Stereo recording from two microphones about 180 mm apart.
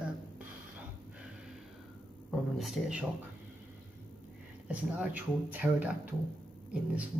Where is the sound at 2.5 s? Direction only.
Centre (ahead or behind).